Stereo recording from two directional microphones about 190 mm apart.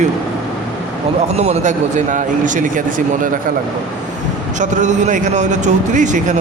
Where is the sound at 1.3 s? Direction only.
35° right (ahead or behind).